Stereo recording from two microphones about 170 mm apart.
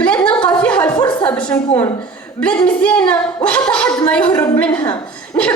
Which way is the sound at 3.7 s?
5° left (ahead or behind).